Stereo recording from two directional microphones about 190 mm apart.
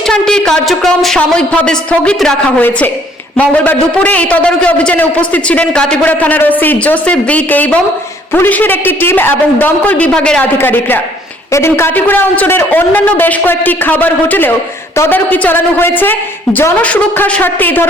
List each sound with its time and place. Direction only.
0.0 s a woman's voice: 5° left (ahead or behind)